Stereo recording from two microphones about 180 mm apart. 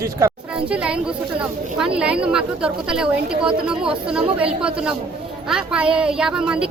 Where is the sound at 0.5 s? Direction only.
5° right (ahead or behind).